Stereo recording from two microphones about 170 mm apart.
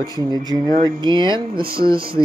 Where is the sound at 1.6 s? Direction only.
60° right (ahead or behind).